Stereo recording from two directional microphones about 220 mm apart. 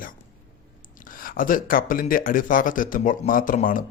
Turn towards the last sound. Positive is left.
turn(degrees=35)  # may be behind; listen again after turning